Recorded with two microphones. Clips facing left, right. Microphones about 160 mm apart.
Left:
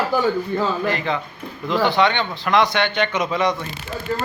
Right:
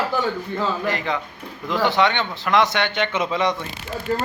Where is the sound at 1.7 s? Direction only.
20° left (ahead or behind).